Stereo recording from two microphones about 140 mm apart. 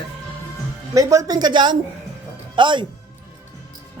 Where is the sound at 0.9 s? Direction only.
25° right (ahead or behind).